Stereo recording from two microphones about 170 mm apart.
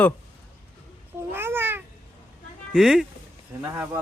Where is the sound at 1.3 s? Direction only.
15° right (ahead or behind).